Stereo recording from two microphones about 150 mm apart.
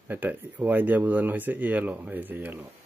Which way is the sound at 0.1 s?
10° right (ahead or behind).